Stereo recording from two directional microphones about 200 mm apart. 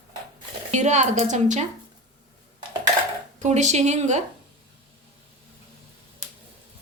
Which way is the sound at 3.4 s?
35° right (ahead or behind).